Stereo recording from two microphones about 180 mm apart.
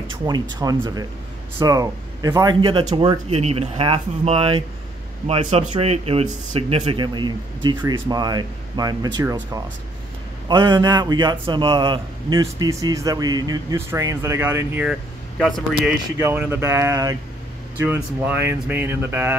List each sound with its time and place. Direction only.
0.1 s a man's voice: 25° right (ahead or behind)
16.2 s speech: 15° right (ahead or behind)